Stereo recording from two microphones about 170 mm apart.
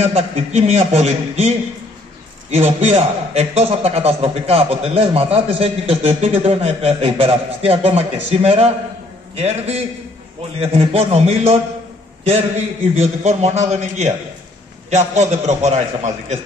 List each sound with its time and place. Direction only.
0.0 s a man's voice: 40° right (ahead or behind)